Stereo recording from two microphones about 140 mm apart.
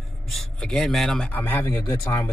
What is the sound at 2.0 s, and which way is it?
Speech, 30° left (ahead or behind).